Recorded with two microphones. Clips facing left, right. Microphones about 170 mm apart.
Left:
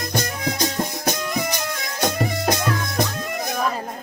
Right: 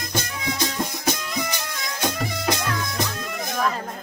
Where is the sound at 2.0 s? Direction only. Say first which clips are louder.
Left 4 dB; 45° left (ahead or behind).